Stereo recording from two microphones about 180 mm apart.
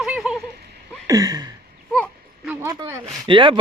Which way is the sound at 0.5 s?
65° right (ahead or behind).